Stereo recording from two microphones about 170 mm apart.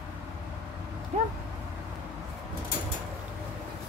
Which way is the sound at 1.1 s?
45° right (ahead or behind).